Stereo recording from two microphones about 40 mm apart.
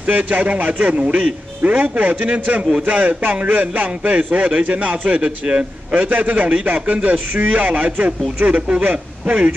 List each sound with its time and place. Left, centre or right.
0.0 s a man's voice: right
5.9 s a man's voice: right